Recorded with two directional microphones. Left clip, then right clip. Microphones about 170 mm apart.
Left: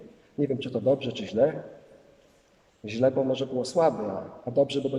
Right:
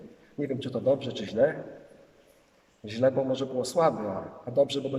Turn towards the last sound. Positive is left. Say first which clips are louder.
# left 1 dB
turn(degrees=10)  # may be behind; listen again after turning